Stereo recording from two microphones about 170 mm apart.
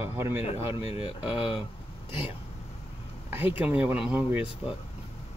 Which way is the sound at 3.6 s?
10° right (ahead or behind).